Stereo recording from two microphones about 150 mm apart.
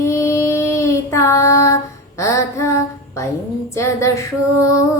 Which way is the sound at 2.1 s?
20° left (ahead or behind).